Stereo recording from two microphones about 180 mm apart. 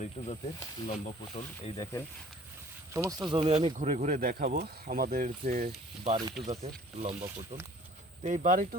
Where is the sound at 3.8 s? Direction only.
45° right (ahead or behind).